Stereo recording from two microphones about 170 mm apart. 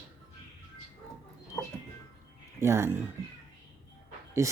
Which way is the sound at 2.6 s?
15° right (ahead or behind).